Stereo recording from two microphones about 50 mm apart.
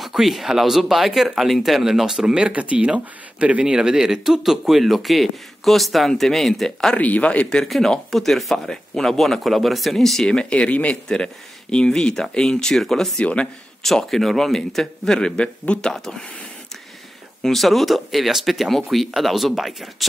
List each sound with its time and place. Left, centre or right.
0.0 s speech: centre; by 3.6 s right
3.6 s speech: centre
7.0 s speech: left
7.6 s speech: centre
10.3 s speech: left; by 13.1 s centre
13.2 s speech: left
13.8 s speech: centre; by 15.9 s left
15.9 s speech: centre
17.4 s speech: centre